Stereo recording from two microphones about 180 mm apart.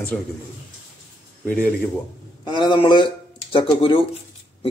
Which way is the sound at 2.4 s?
25° left (ahead or behind).